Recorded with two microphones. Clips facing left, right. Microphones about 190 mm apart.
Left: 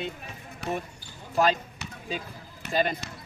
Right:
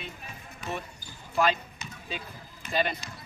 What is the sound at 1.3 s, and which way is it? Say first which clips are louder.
Speech: left 2 dB; 40° left (ahead or behind).